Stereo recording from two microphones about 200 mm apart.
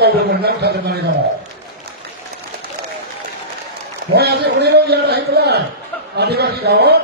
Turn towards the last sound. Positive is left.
turn(degrees=-55)  # may be behind; listen again after turning